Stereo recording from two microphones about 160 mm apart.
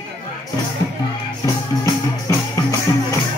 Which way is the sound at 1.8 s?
20° left (ahead or behind).